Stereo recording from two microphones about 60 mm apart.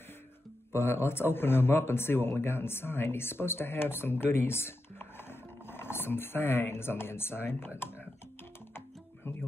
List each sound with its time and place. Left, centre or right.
0.7 s a man's voice: left